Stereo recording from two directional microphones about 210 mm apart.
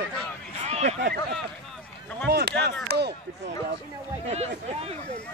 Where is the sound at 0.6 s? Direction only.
30° right (ahead or behind).